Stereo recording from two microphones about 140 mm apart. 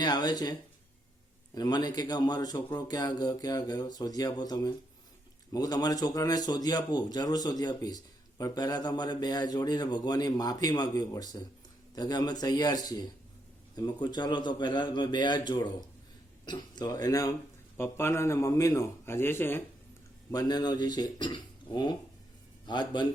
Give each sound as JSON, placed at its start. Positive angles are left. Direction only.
{"t": 0.0, "sound": "speech", "side_deg": 30}
{"t": 1.5, "sound": "a man's voice", "side_deg": 30}
{"t": 20.3, "sound": "a man's voice", "side_deg": 30}